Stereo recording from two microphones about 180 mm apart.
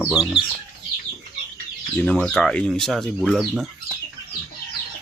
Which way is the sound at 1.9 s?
5° left (ahead or behind).